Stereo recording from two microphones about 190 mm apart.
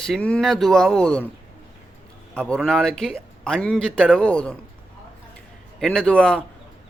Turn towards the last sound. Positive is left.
turn(degrees=5)  # may be behind; listen again after turning